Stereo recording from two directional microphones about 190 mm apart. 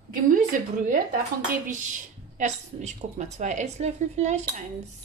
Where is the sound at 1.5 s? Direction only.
40° right (ahead or behind).